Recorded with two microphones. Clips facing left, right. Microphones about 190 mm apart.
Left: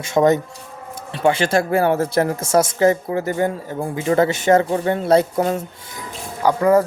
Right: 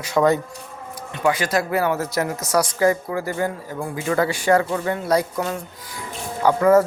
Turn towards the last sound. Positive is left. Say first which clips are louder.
# even
turn(degrees=15)  # may be behind; listen again after turning